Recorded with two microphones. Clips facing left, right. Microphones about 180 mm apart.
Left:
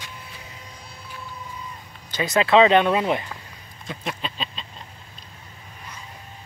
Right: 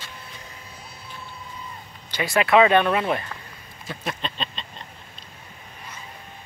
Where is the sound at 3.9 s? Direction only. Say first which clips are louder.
Even; 5° left (ahead or behind).